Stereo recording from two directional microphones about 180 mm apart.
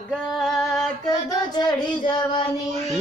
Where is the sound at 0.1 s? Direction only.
Centre (ahead or behind).